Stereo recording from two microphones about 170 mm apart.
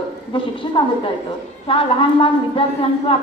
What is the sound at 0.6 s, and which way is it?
Music, 30° left (ahead or behind).